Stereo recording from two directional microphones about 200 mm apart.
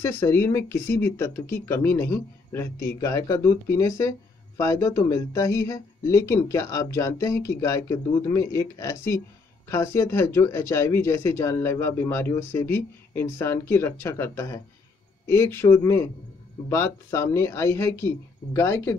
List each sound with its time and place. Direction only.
0.0 s speech: 15° left (ahead or behind)